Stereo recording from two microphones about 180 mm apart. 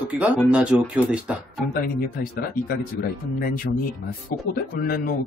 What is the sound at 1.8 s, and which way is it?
Speech, 55° left (ahead or behind).